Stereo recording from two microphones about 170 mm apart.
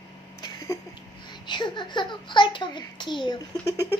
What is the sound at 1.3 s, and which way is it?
A child's voice, 25° left (ahead or behind).